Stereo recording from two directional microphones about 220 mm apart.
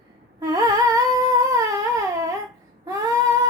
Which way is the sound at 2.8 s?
15° right (ahead or behind).